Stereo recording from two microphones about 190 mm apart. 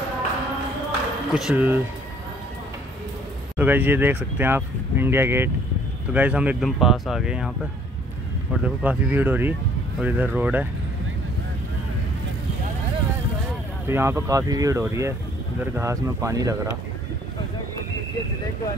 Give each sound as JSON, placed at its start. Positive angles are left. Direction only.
{"t": 1.3, "sound": "speech", "side_deg": -5}
{"t": 3.5, "sound": "speech", "side_deg": -10}
{"t": 8.6, "sound": "speech", "side_deg": -10}
{"t": 13.8, "sound": "speech", "side_deg": -15}